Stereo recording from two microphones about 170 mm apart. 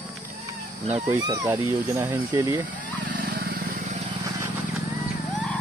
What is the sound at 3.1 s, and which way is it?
Vehicle, 55° right (ahead or behind).